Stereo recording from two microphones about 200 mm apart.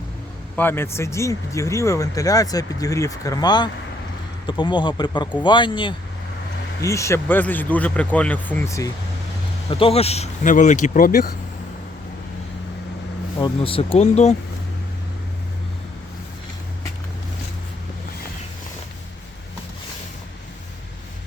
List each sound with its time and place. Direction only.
0.5 s speech: 10° left (ahead or behind)
9.6 s speech: 25° left (ahead or behind); by 11.3 s 45° left (ahead or behind)
13.4 s speech: 25° left (ahead or behind)